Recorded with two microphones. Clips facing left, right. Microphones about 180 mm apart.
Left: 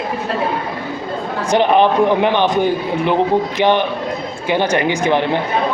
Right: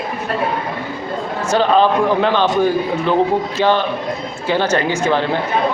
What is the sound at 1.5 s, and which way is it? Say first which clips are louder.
Speech: left 1 dB; 20° left (ahead or behind).